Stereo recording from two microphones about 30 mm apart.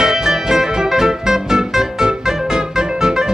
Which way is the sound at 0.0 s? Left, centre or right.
Centre.